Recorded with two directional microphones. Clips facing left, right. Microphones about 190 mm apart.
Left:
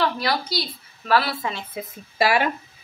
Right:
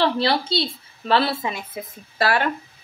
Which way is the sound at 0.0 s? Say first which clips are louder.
Right 3 dB; 30° right (ahead or behind).